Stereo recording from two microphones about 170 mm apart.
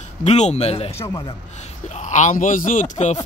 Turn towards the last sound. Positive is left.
turn(degrees=40)  # may be behind; listen again after turning